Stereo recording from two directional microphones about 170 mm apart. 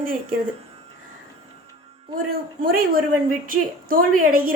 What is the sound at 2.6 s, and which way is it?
A woman's voice, 60° right (ahead or behind).